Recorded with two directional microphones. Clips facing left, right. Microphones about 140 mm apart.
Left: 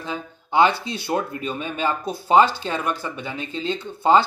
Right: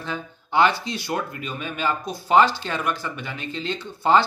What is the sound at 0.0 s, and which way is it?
A man's voice, 15° left (ahead or behind).